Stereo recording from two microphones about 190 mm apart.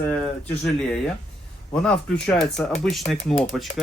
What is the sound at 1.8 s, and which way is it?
Speech, 5° left (ahead or behind).